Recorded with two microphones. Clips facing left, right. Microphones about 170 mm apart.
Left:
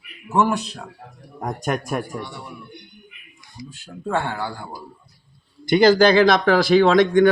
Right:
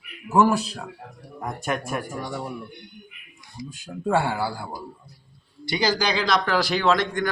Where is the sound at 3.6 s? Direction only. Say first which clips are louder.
Right 3 dB; 15° right (ahead or behind).